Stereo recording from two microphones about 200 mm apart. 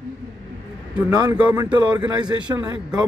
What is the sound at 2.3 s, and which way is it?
Speech, 10° right (ahead or behind).